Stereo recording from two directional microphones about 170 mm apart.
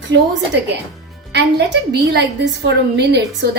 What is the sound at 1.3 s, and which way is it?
A woman's voice, 80° right.